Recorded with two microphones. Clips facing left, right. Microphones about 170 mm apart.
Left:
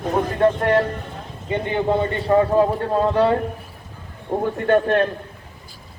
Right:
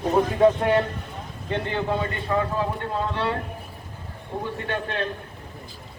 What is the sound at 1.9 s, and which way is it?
Speech, 25° left (ahead or behind).